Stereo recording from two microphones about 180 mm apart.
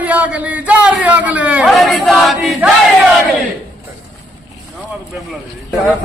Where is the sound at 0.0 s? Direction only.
10° right (ahead or behind).